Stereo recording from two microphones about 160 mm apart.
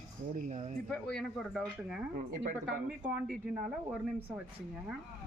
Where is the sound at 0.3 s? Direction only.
50° right (ahead or behind).